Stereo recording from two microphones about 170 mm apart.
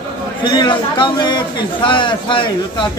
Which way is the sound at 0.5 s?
30° left (ahead or behind).